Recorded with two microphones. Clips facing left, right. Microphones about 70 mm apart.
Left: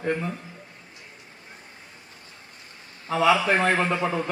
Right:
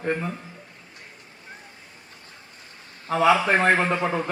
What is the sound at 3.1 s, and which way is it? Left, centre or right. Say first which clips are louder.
A man's voice: right 1 dB; right.